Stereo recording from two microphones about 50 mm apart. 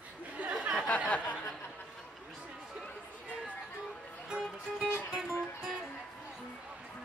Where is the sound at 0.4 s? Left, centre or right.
Right.